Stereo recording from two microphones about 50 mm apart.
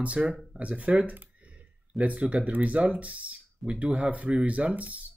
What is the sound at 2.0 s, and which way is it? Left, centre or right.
Speech, right.